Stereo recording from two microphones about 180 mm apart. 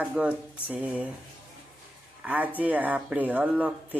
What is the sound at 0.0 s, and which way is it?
Speech, 5° right (ahead or behind).